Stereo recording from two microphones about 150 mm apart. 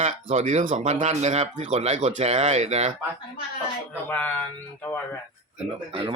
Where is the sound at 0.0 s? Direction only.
50° right (ahead or behind).